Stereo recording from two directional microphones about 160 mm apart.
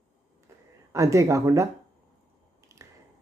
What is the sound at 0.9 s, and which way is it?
Speech, 20° right (ahead or behind).